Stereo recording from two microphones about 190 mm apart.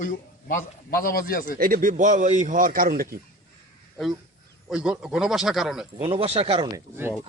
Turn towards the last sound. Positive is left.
turn(degrees=-10)  # may be behind; listen again after turning